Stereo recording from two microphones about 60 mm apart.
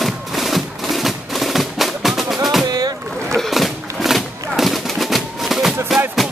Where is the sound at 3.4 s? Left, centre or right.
Centre.